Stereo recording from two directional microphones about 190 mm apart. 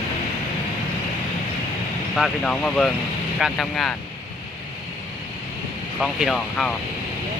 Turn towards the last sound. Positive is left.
turn(degrees=0)  # may be behind; listen again after turning